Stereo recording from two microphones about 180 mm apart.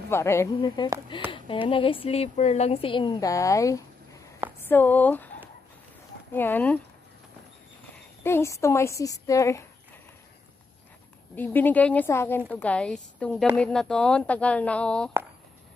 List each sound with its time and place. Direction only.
0.1 s a woman's voice: 15° left (ahead or behind)
0.8 s speech: 25° left (ahead or behind); by 5.3 s 10° left (ahead or behind)
6.3 s a woman's voice: 10° left (ahead or behind)
8.2 s a woman's voice: 15° left (ahead or behind)
11.3 s a woman's voice: 10° left (ahead or behind)